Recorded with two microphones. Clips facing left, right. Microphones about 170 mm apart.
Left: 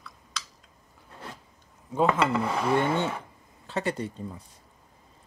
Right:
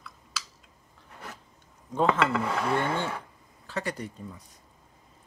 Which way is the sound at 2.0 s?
5° left (ahead or behind).